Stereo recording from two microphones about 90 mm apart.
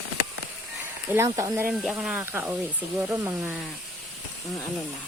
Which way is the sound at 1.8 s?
5° right (ahead or behind).